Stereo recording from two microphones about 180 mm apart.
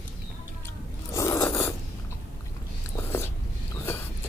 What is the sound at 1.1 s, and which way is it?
Scrape, 15° left (ahead or behind).